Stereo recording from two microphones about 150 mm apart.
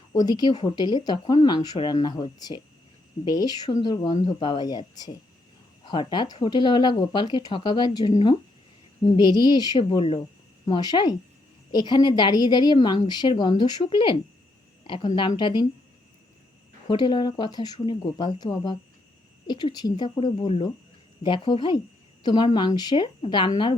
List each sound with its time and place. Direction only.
0.1 s a woman's voice: 25° left (ahead or behind)
16.9 s a woman's voice: 30° left (ahead or behind)